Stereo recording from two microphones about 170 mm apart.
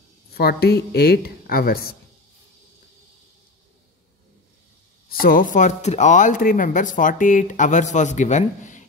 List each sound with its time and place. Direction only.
0.3 s speech: 65° left (ahead or behind)
5.2 s speech: 55° left (ahead or behind)